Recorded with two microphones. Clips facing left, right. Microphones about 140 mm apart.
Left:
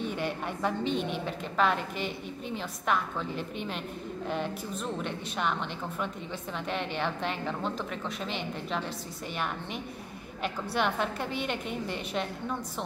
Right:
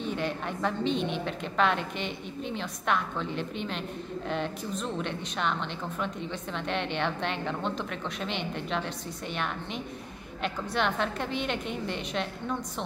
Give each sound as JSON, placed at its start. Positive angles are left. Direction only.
{"t": 0.2, "sound": "a woman's voice", "side_deg": 10}
{"t": 0.8, "sound": "a woman's voice", "side_deg": 45}
{"t": 1.2, "sound": "a woman's voice", "side_deg": 5}